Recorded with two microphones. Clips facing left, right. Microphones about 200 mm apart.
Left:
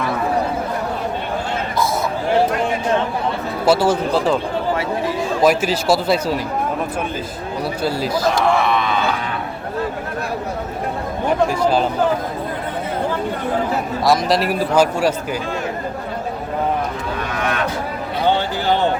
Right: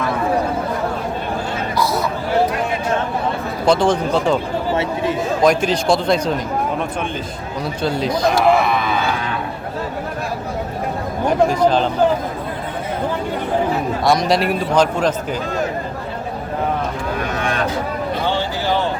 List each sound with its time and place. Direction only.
3.7 s speech: 5° left (ahead or behind)
4.7 s chatter: 25° right (ahead or behind)
5.4 s a man's voice: 5° left (ahead or behind)
7.8 s a man's voice: 5° left (ahead or behind)
11.6 s speech: 10° left (ahead or behind)
14.0 s a man's voice: centre (ahead or behind)